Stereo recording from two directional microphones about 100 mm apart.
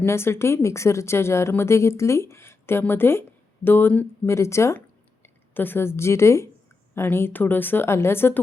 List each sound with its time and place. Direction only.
0.0 s a woman's voice: 25° left (ahead or behind)